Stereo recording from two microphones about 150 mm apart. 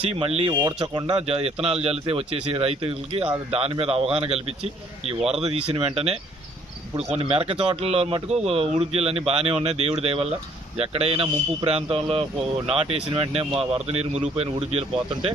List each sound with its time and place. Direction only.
0.0 s speech: 40° right (ahead or behind)
0.6 s a man's voice: 30° right (ahead or behind)
1.1 s speech: 40° right (ahead or behind)